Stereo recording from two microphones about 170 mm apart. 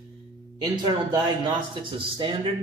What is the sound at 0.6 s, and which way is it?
Speech, 25° right (ahead or behind).